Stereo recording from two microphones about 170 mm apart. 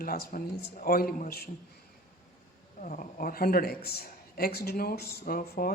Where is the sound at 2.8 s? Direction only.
50° left (ahead or behind).